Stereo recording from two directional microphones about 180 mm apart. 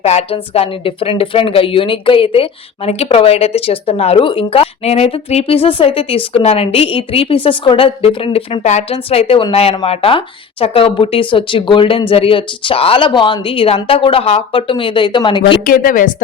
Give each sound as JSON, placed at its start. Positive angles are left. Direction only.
{"t": 0.0, "sound": "a woman's voice", "side_deg": 35}
{"t": 15.6, "sound": "speech", "side_deg": 50}